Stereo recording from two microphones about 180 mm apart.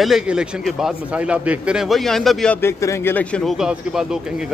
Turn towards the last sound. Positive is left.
turn(degrees=-5)  # may be behind; listen again after turning